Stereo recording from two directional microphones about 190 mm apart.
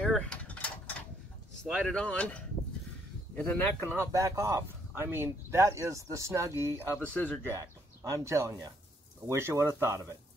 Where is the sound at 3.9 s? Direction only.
15° right (ahead or behind).